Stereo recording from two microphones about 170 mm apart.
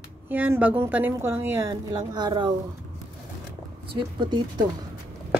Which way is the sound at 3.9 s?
30° right (ahead or behind).